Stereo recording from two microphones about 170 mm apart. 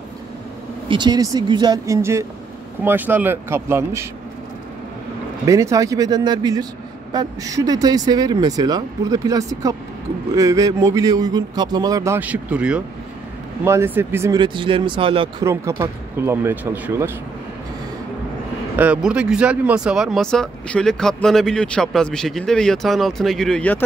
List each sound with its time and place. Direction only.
0.8 s speech: 25° right (ahead or behind)
5.5 s speech: 20° right (ahead or behind)
14.4 s speech: 30° right (ahead or behind)
15.4 s speech: 15° right (ahead or behind)
18.8 s speech: 5° right (ahead or behind)